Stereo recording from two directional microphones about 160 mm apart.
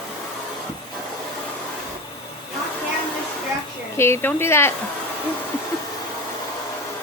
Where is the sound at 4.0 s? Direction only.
15° left (ahead or behind).